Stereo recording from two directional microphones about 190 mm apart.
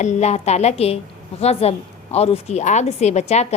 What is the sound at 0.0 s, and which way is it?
A woman's voice, 35° left (ahead or behind).